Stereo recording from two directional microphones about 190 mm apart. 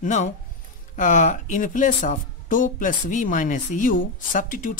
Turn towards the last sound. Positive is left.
turn(degrees=45)  # may be behind; listen again after turning